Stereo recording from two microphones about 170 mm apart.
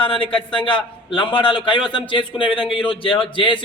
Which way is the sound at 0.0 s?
30° left (ahead or behind).